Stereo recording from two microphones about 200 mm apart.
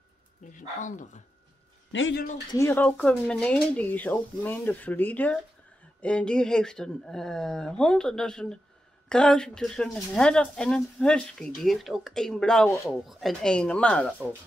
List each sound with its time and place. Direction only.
0.5 s speech: 40° left (ahead or behind)
1.9 s a man's voice: 70° left (ahead or behind)
2.5 s speech: 10° left (ahead or behind)